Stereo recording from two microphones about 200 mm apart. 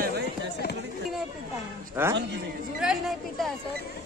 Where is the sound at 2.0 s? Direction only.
10° right (ahead or behind).